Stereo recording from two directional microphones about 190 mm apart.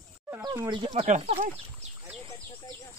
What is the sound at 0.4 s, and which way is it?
Speech, 20° right (ahead or behind).